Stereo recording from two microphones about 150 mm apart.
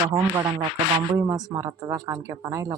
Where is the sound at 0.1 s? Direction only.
20° right (ahead or behind).